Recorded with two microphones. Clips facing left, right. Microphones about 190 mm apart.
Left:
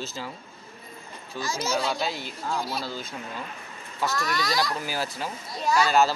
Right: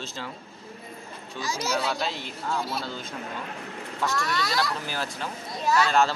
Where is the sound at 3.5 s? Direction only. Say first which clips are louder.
Right 6 dB; 70° right (ahead or behind).